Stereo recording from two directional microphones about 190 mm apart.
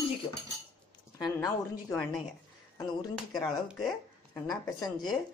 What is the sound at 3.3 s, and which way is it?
Speech, centre (ahead or behind).